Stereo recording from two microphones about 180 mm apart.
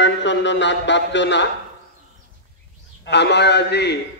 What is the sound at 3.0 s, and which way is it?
Speech, 70° left (ahead or behind).